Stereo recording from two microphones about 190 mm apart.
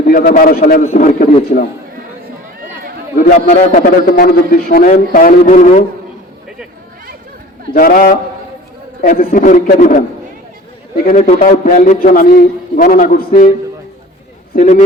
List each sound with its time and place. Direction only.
0.0 s a man's voice: 50° left (ahead or behind)
3.2 s a man's voice: 35° left (ahead or behind)
7.7 s a man's voice: 50° left (ahead or behind)
11.1 s a man's voice: 40° left (ahead or behind)
14.5 s speech: 40° left (ahead or behind)